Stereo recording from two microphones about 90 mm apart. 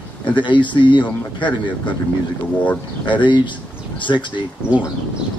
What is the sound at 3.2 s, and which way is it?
Speech, 60° left (ahead or behind).